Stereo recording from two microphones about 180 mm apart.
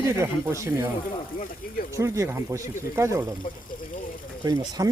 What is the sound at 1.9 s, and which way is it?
Speech, 15° right (ahead or behind).